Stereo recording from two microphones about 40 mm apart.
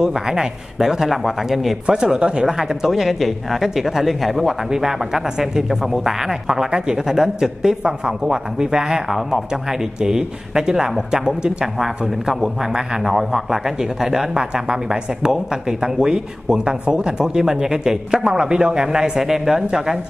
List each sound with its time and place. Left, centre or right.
0.0 s speech: centre
1.0 s speech: centre
1.9 s speech: centre
2.4 s speech: centre
4.6 s speech: centre